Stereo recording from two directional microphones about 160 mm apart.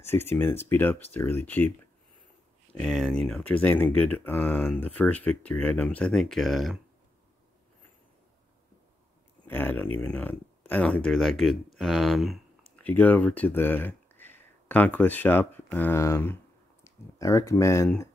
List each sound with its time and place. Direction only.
0.0 s speech: 15° left (ahead or behind)
2.7 s speech: 5° left (ahead or behind)
9.5 s speech: 15° left (ahead or behind)
12.8 s speech: 10° left (ahead or behind)